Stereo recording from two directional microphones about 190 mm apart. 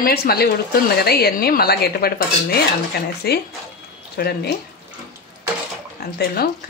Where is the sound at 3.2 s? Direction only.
55° left (ahead or behind).